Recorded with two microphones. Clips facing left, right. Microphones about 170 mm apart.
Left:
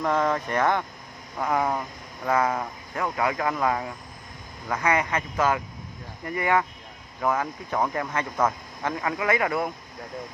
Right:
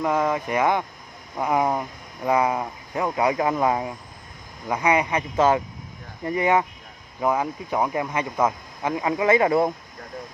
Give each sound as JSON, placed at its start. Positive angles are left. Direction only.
{"t": 0.0, "sound": "speech", "side_deg": -10}